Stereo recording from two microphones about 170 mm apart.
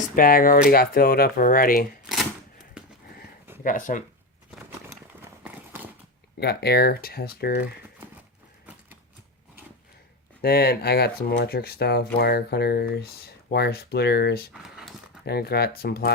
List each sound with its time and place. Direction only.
0.2 s speech: 55° left (ahead or behind)
3.6 s speech: 50° left (ahead or behind)
5.4 s horse: 10° right (ahead or behind)
6.4 s speech: 70° left (ahead or behind)
10.4 s speech: 70° left (ahead or behind)
14.5 s a sound: 5° right (ahead or behind)
15.2 s speech: 70° left (ahead or behind)